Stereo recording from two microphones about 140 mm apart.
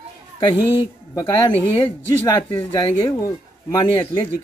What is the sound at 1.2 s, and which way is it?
Speech, 25° left (ahead or behind).